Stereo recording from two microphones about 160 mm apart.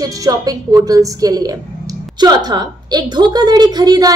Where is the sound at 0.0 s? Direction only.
25° right (ahead or behind).